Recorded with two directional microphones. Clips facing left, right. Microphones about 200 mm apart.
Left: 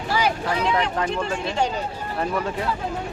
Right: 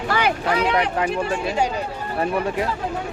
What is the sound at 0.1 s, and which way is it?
Speech, 60° right (ahead or behind).